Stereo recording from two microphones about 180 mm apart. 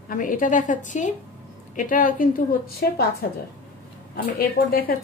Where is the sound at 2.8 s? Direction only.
60° left (ahead or behind).